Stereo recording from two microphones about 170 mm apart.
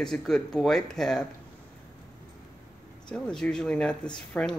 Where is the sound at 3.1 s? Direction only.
5° left (ahead or behind).